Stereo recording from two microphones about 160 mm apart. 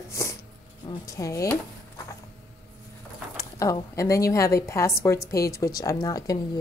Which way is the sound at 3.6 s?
20° left (ahead or behind).